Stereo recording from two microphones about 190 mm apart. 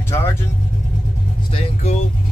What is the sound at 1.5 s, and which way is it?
Speech, 35° left (ahead or behind).